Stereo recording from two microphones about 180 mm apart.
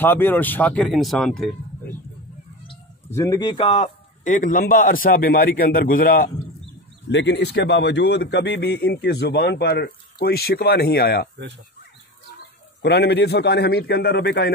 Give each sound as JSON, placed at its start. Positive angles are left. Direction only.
{"t": 0.0, "sound": "speech", "side_deg": 10}
{"t": 3.1, "sound": "a man's voice", "side_deg": 15}
{"t": 7.1, "sound": "speech", "side_deg": 75}
{"t": 12.8, "sound": "a man's voice", "side_deg": 70}